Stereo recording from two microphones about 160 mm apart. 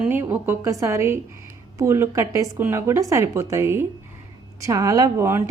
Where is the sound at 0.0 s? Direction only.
15° right (ahead or behind).